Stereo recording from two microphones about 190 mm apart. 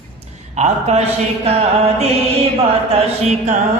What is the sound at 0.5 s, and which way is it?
A man's voice, 35° right (ahead or behind).